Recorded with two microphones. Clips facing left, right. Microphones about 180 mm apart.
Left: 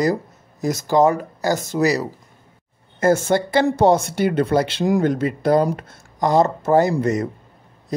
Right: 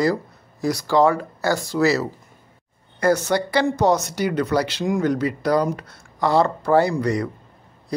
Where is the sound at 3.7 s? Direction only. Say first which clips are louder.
Left 3 dB; 30° left (ahead or behind).